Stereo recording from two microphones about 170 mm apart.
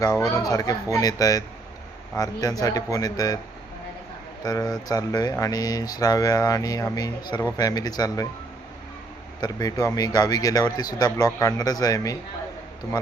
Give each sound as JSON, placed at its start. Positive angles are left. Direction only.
{"t": 0.0, "sound": "speech", "side_deg": 20}
{"t": 4.4, "sound": "speech", "side_deg": 25}
{"t": 9.4, "sound": "speech", "side_deg": 25}